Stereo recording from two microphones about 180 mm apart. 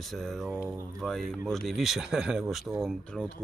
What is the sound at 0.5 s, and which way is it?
Speech, 10° right (ahead or behind).